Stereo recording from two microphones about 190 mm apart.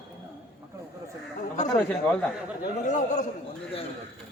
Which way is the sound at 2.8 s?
40° left (ahead or behind).